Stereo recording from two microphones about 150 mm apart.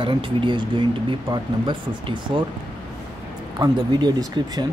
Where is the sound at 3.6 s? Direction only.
30° right (ahead or behind).